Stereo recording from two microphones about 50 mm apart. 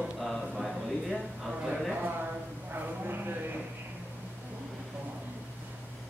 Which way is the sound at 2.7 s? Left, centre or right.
Right.